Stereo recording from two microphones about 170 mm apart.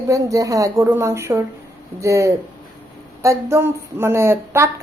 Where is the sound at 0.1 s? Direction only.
20° right (ahead or behind).